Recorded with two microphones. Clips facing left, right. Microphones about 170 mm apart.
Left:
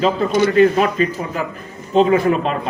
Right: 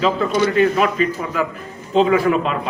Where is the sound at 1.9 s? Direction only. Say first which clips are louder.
Left 1 dB; 35° left (ahead or behind).